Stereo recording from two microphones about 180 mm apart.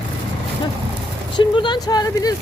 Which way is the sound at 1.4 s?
25° left (ahead or behind).